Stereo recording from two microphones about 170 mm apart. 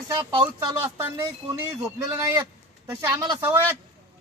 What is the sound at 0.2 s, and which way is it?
Speech, 25° right (ahead or behind).